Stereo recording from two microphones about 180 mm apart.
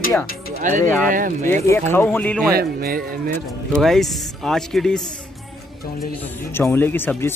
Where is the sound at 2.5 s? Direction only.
55° right (ahead or behind).